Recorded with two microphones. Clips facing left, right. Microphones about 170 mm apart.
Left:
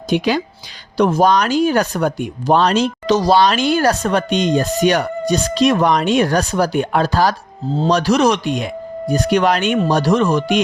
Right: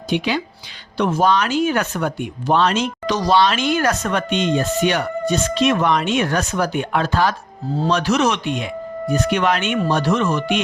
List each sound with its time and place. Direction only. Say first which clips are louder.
0.1 s speech: left 4 dB; 40° left (ahead or behind)